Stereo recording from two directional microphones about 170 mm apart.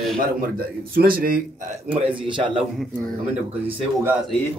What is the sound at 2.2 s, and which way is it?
Speech, 30° right (ahead or behind).